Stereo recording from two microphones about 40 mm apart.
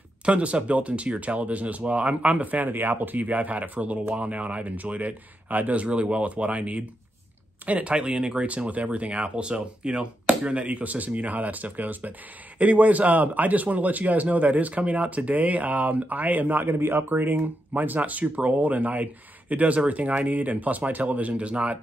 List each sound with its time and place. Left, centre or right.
0.2 s speech: right
16.6 s speech: right